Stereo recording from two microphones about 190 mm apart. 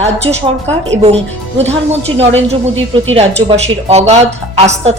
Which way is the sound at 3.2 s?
35° right (ahead or behind).